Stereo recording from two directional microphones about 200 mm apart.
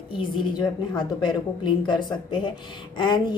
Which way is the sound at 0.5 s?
20° left (ahead or behind).